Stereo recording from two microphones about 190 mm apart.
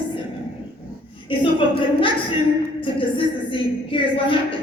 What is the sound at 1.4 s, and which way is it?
A woman's voice, 25° left (ahead or behind).